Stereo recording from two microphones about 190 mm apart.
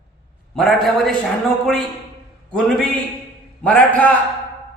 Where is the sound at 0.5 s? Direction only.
Centre (ahead or behind).